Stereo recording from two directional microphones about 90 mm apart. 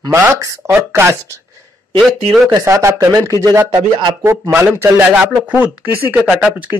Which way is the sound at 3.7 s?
55° right (ahead or behind).